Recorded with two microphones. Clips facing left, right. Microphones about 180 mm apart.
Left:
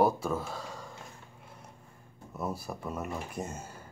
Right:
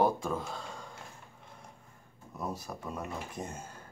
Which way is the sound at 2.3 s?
5° left (ahead or behind).